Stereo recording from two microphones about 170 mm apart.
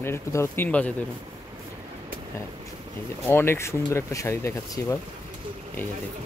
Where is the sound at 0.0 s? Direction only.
15° left (ahead or behind).